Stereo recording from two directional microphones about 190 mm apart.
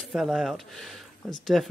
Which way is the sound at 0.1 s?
Centre (ahead or behind).